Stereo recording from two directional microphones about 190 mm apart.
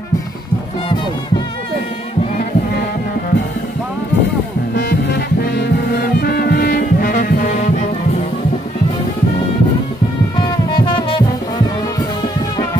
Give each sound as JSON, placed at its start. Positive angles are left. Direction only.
{"t": 4.7, "sound": "music", "side_deg": 60}
{"t": 10.7, "sound": "music", "side_deg": 25}